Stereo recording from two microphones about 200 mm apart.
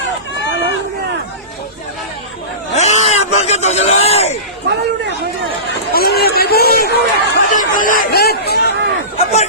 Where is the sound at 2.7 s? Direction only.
35° left (ahead or behind).